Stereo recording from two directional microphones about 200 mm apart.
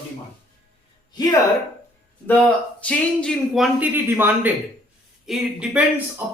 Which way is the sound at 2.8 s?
5° left (ahead or behind).